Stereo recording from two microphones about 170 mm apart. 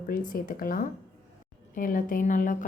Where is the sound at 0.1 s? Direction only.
50° left (ahead or behind).